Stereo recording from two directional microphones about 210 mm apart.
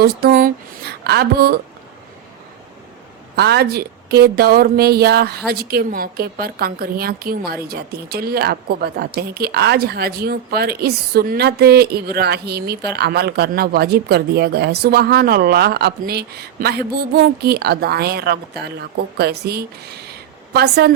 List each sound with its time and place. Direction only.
0.0 s a woman's voice: 45° right (ahead or behind)
3.3 s a woman's voice: 50° right (ahead or behind)